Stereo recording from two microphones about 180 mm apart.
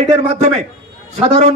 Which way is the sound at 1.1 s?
40° right (ahead or behind).